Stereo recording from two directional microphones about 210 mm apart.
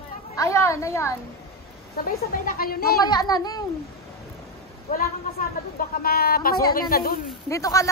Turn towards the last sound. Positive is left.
turn(degrees=15)  # may be behind; listen again after turning